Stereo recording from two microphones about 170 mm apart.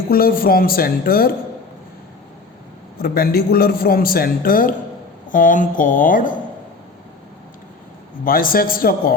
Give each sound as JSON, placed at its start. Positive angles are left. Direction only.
{"t": 0.1, "sound": "a man's voice", "side_deg": 60}
{"t": 3.0, "sound": "a man's voice", "side_deg": 60}
{"t": 8.2, "sound": "a man's voice", "side_deg": 55}